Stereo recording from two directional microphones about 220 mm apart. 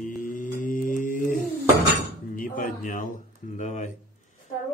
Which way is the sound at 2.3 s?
40° left (ahead or behind).